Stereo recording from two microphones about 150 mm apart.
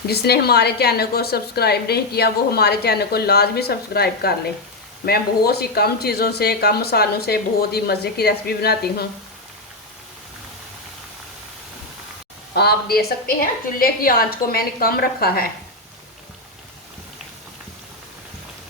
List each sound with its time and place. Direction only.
0.1 s a woman's voice: 90° left
12.5 s a woman's voice: 90° left